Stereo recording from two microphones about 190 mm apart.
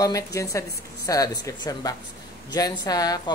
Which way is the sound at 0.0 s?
15° left (ahead or behind).